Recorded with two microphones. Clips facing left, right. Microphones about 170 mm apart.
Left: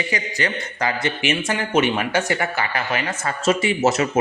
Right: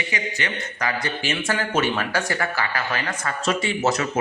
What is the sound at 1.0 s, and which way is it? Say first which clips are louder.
Speech: left 4 dB; 20° left (ahead or behind).